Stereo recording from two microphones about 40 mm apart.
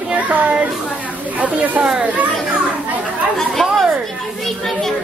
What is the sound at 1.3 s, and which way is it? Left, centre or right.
Speech, right.